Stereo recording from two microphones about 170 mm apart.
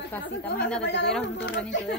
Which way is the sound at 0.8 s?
90° left.